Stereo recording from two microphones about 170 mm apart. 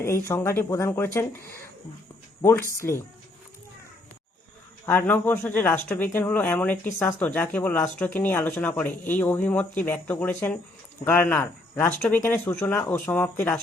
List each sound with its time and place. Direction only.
0.0 s speech: 15° left (ahead or behind)
2.4 s speech: 15° left (ahead or behind)
4.9 s speech: 10° left (ahead or behind)